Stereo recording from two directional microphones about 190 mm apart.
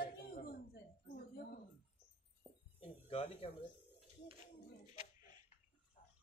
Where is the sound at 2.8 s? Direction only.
30° left (ahead or behind).